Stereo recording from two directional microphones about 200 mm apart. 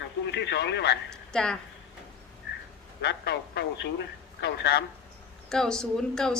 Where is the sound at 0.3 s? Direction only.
60° left (ahead or behind).